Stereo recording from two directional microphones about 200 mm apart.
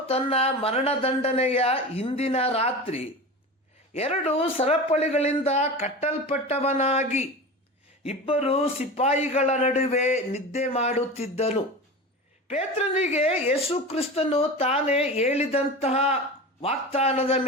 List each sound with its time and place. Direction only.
0.1 s speech: 30° left (ahead or behind)